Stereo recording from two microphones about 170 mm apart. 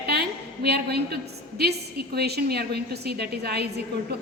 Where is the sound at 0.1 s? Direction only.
70° right (ahead or behind).